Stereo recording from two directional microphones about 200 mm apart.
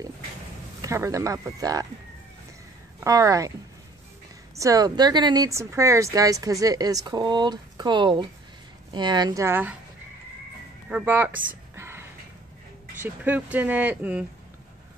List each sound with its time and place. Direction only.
0.8 s speech: 15° right (ahead or behind)
3.0 s speech: 15° right (ahead or behind)
4.6 s speech: 15° right (ahead or behind)
10.9 s speech: 10° right (ahead or behind)
11.7 s a sound: 10° right (ahead or behind)
13.0 s speech: 10° right (ahead or behind)